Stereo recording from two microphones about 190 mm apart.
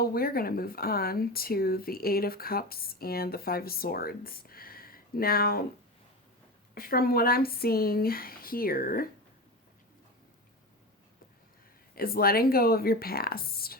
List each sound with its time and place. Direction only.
0.0 s speech: 50° left (ahead or behind)
6.7 s speech: 50° left (ahead or behind)
11.9 s speech: 50° left (ahead or behind)